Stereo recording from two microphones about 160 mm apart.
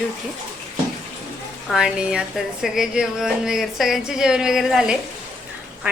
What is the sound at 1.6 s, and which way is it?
A woman's voice, 5° right (ahead or behind).